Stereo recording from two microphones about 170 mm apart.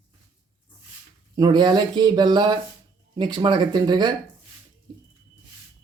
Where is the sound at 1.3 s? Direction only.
25° right (ahead or behind).